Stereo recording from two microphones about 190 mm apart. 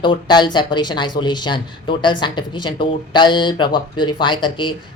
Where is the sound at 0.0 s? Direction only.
25° left (ahead or behind).